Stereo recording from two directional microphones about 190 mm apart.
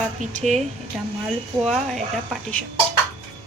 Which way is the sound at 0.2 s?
40° right (ahead or behind).